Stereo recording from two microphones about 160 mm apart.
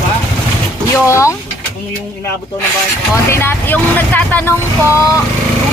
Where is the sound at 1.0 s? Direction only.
15° left (ahead or behind).